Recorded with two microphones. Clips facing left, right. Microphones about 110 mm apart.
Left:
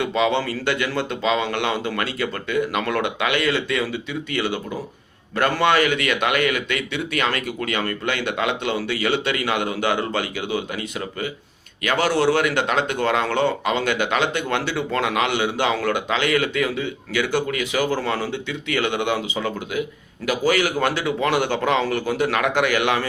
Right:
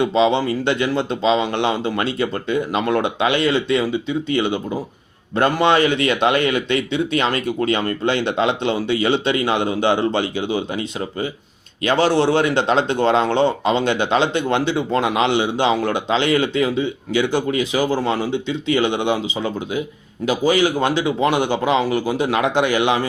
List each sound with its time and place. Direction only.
0.0 s speech: 25° right (ahead or behind)